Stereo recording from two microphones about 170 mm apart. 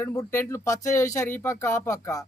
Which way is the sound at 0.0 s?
15° left (ahead or behind).